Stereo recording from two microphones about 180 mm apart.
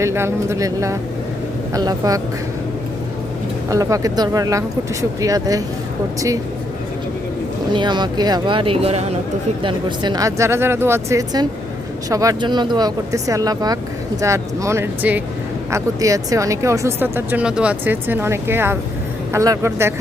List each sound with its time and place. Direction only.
0.0 s speech: 15° right (ahead or behind)
3.7 s speech: 20° right (ahead or behind)
7.7 s speech: 25° right (ahead or behind)